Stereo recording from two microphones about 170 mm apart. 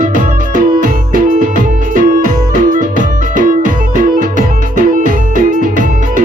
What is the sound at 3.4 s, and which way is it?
Music, 50° right (ahead or behind).